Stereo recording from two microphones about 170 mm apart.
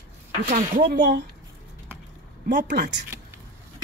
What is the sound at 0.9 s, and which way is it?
Speech, 90° right.